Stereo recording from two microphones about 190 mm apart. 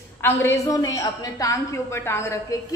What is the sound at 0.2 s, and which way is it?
A woman's voice, 15° left (ahead or behind).